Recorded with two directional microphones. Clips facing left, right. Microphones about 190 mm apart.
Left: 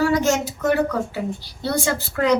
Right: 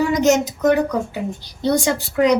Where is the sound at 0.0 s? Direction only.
20° right (ahead or behind).